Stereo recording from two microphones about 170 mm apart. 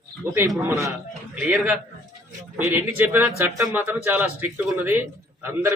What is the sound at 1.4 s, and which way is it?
A man's voice, 5° right (ahead or behind).